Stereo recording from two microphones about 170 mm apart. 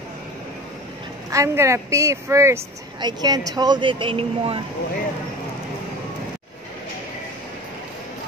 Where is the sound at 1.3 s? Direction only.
15° right (ahead or behind); by 4.6 s 35° right (ahead or behind).